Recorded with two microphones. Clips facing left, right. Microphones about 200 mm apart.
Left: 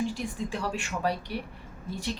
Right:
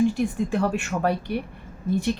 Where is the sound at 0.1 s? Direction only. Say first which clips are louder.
Right 9 dB; 55° right (ahead or behind).